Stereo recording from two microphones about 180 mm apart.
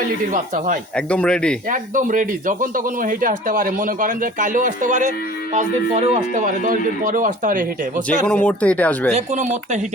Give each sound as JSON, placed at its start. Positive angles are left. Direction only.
{"t": 0.5, "sound": "speech", "side_deg": -50}
{"t": 0.9, "sound": "speech", "side_deg": 5}
{"t": 1.7, "sound": "speech", "side_deg": -45}
{"t": 8.3, "sound": "speech", "side_deg": 5}
{"t": 9.1, "sound": "speech", "side_deg": -40}